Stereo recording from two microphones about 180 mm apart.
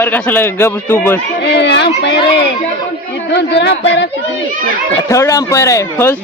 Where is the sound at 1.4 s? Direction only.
70° left (ahead or behind).